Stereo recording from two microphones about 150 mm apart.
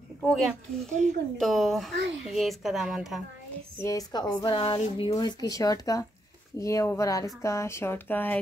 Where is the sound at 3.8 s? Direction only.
25° left (ahead or behind).